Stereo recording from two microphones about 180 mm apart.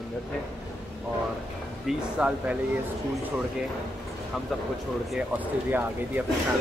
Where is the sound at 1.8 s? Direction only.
5° right (ahead or behind).